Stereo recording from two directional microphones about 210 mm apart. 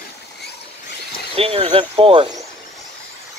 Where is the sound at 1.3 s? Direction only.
25° right (ahead or behind).